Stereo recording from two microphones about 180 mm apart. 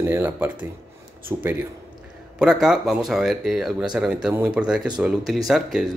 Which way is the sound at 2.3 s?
5° right (ahead or behind).